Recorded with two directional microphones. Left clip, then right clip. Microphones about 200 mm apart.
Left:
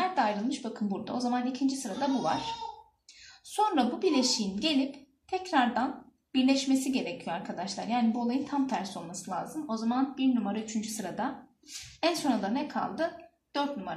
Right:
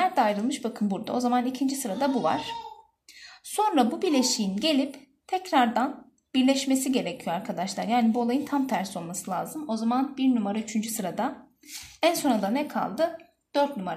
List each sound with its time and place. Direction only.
0.0 s a woman's voice: 45° right (ahead or behind)
3.5 s a woman's voice: 50° right (ahead or behind)